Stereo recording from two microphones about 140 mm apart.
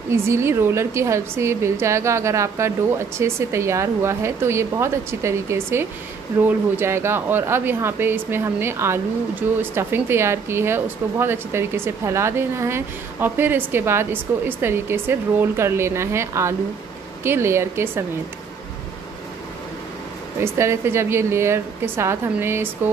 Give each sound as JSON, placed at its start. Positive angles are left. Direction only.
{"t": 0.1, "sound": "a woman's voice", "side_deg": -20}
{"t": 20.3, "sound": "speech", "side_deg": -20}